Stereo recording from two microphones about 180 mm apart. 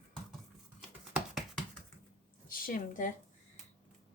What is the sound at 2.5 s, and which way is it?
Speech, 50° left (ahead or behind).